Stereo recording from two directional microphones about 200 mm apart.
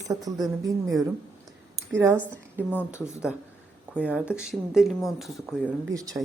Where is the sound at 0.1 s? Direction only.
20° right (ahead or behind).